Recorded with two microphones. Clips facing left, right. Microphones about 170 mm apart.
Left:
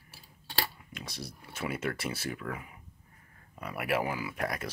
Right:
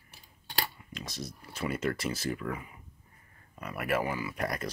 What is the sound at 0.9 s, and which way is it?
Speech, 60° left (ahead or behind).